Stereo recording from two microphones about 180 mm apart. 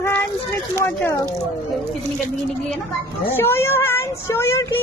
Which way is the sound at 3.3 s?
15° left (ahead or behind).